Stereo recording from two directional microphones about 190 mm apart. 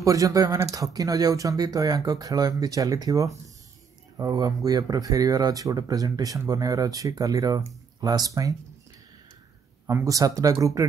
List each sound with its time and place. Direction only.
0.0 s speech: 15° right (ahead or behind)
9.8 s speech: 15° right (ahead or behind)